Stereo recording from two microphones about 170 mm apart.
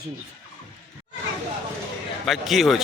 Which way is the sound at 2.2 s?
Centre (ahead or behind).